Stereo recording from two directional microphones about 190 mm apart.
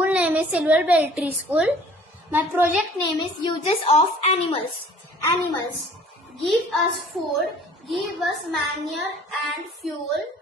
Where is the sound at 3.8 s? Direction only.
30° left (ahead or behind).